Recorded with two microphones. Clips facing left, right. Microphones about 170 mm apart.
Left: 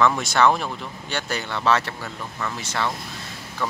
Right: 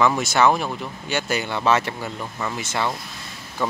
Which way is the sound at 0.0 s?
5° right (ahead or behind).